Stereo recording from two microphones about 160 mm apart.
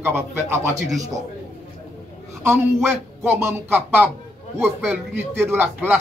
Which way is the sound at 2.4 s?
15° right (ahead or behind).